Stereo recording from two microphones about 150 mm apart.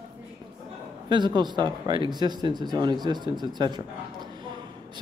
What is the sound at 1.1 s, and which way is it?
Speech, 30° right (ahead or behind).